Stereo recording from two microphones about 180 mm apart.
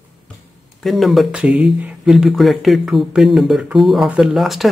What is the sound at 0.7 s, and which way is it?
Speech, centre (ahead or behind).